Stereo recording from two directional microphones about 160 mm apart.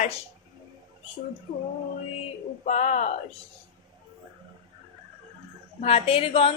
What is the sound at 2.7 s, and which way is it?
Speech, 45° left (ahead or behind).